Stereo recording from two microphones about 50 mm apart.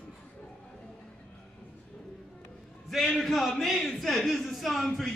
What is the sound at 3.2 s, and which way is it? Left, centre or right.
Speech, centre.